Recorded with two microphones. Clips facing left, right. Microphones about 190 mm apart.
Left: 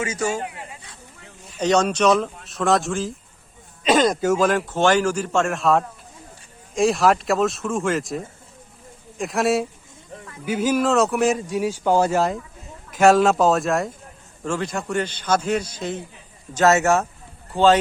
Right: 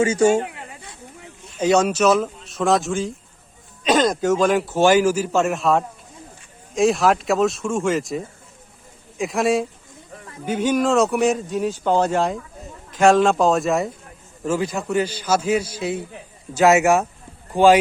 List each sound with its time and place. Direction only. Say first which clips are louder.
0.0 s speech: right 8 dB; 30° right (ahead or behind)
1.5 s a man's voice: right 2 dB; 5° right (ahead or behind)